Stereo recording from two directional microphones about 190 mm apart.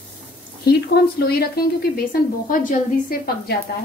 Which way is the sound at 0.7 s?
55° left (ahead or behind).